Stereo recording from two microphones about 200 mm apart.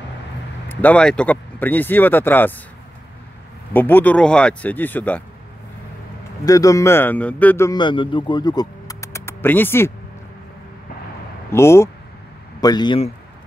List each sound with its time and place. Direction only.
0.7 s speech: 10° left (ahead or behind)
3.7 s speech: 10° left (ahead or behind)
6.4 s speech: 15° left (ahead or behind)
11.5 s a man's voice: 15° left (ahead or behind)